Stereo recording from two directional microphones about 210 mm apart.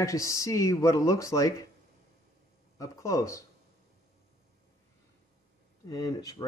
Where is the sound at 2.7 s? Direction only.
15° left (ahead or behind).